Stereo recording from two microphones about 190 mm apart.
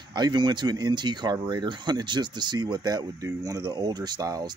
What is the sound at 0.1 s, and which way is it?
Speech, 20° right (ahead or behind).